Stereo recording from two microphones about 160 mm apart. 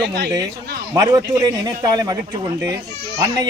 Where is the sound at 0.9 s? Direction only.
20° right (ahead or behind).